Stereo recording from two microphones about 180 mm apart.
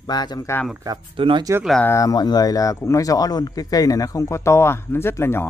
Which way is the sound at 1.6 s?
5° left (ahead or behind).